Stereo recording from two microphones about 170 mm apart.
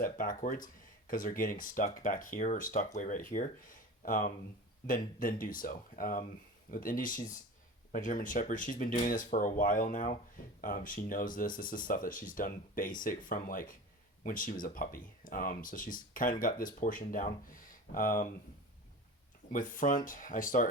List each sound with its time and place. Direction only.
0.0 s speech: 55° left (ahead or behind)
19.5 s speech: 50° left (ahead or behind)